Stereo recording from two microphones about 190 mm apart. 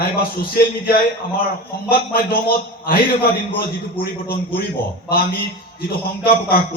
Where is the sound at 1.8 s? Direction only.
50° left (ahead or behind).